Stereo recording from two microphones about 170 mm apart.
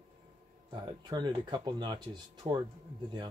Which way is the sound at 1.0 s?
25° right (ahead or behind).